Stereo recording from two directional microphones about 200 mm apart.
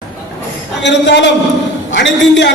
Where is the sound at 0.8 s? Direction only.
60° left (ahead or behind).